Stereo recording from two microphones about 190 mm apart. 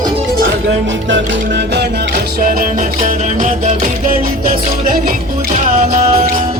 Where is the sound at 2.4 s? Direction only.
45° right (ahead or behind).